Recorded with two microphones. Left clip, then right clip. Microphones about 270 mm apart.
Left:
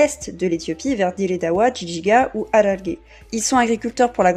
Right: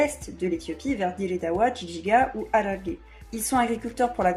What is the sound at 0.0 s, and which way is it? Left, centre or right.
Speech, left.